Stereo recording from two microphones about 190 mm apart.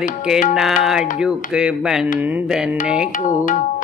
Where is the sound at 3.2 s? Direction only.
40° left (ahead or behind).